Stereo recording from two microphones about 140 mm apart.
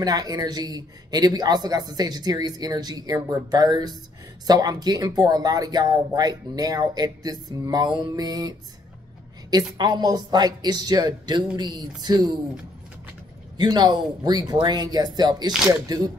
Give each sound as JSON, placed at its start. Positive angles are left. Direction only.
{"t": 0.0, "sound": "speech", "side_deg": -30}
{"t": 13.6, "sound": "speech", "side_deg": -30}